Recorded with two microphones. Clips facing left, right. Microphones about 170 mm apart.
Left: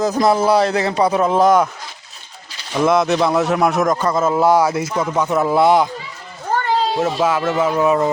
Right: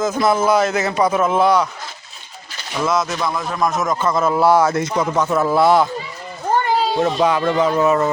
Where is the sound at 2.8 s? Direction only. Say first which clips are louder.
Left 5 dB; 60° left (ahead or behind).